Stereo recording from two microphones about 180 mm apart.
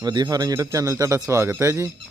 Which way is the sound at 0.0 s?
25° right (ahead or behind).